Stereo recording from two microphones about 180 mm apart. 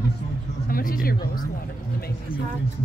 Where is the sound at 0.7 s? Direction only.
50° left (ahead or behind).